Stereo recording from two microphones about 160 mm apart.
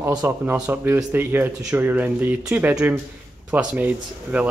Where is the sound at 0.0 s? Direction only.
20° right (ahead or behind).